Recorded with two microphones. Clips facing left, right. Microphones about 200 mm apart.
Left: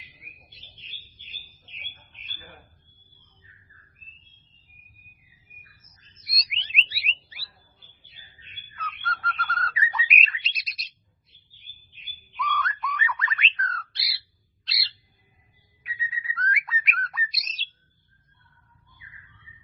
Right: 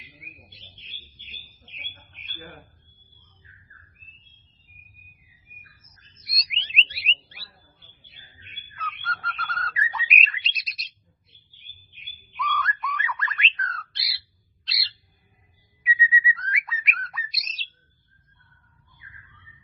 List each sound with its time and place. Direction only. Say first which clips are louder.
2.2 s a sound: right 6 dB; 60° right (ahead or behind)
6.2 s bird: right 1 dB; centre (ahead or behind)
8.7 s bird: left 1 dB; centre (ahead or behind)
12.3 s bird: even; centre (ahead or behind)